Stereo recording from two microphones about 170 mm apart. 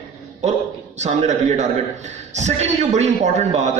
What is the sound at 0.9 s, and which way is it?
A man's voice, 45° right (ahead or behind).